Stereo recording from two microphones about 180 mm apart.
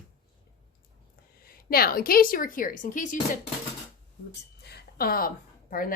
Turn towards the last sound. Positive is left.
turn(degrees=50)  # may be behind; listen again after turning